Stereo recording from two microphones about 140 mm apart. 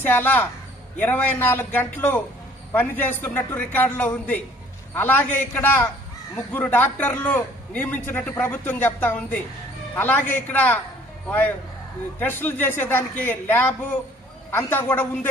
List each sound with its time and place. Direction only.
0.0 s a man's voice: 15° left (ahead or behind)